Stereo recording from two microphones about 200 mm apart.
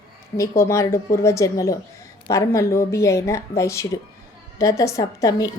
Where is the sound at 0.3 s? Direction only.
15° left (ahead or behind).